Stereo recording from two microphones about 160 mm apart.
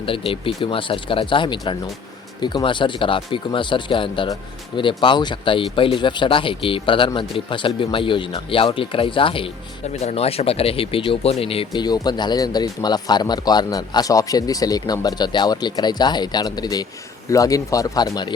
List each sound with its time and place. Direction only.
0.0 s speech: 35° left (ahead or behind)